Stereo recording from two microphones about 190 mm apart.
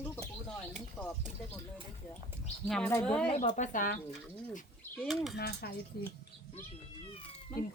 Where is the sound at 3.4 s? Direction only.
40° left (ahead or behind).